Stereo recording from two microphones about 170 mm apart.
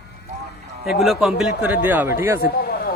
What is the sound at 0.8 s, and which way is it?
A man's voice, centre (ahead or behind).